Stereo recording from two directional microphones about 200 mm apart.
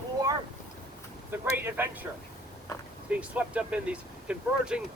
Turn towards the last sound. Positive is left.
turn(degrees=-5)  # may be behind; listen again after turning